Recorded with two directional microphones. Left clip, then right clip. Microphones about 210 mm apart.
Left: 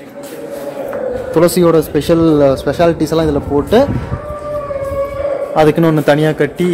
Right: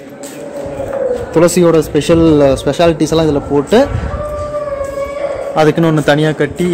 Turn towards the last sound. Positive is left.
turn(degrees=5)  # may be behind; listen again after turning